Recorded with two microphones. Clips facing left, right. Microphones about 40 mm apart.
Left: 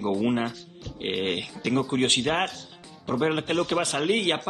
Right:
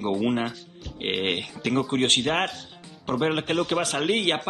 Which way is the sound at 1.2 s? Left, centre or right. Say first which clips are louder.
Right 1 dB; right.